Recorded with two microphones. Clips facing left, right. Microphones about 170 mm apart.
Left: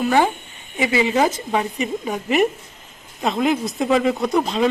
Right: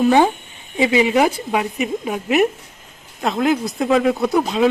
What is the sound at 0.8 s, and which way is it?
A woman's voice, 20° right (ahead or behind).